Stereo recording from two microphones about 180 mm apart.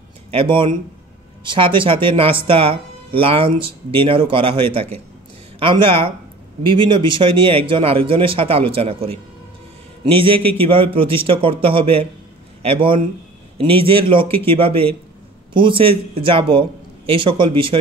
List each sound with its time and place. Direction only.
0.3 s speech: 30° right (ahead or behind)